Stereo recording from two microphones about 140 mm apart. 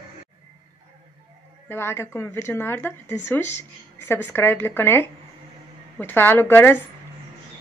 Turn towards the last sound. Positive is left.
turn(degrees=15)  # may be behind; listen again after turning